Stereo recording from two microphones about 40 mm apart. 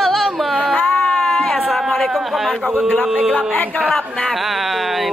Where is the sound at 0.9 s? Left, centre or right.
Centre.